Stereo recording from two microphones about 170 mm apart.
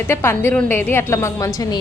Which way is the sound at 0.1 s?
15° left (ahead or behind).